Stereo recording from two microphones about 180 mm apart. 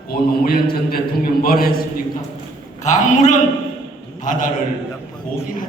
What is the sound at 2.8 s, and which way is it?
A man's voice, 40° left (ahead or behind).